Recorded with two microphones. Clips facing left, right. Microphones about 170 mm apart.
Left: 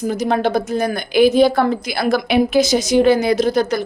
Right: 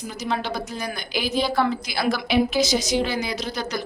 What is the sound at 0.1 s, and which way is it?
A woman's voice, 50° left (ahead or behind).